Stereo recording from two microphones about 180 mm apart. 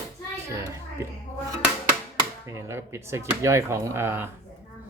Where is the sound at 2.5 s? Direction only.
15° right (ahead or behind).